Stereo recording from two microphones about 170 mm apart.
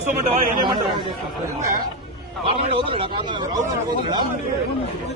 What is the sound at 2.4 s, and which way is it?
Speech, 30° right (ahead or behind).